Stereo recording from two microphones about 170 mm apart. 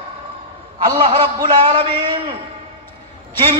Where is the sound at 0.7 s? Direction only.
30° right (ahead or behind).